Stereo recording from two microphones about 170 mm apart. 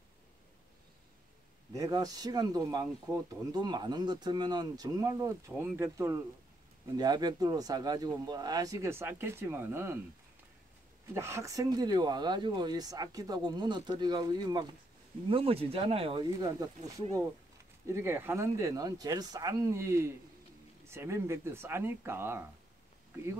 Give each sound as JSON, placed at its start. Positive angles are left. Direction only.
{"t": 1.7, "sound": "speech", "side_deg": -20}
{"t": 5.5, "sound": "speech", "side_deg": -10}
{"t": 11.1, "sound": "speech", "side_deg": -15}
{"t": 17.8, "sound": "speech", "side_deg": -15}